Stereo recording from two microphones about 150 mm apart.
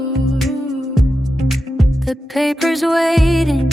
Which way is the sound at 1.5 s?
Centre (ahead or behind).